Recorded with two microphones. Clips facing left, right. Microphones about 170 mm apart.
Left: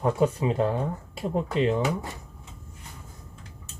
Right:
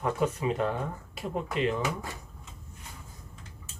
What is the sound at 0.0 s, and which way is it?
Speech, 30° left (ahead or behind).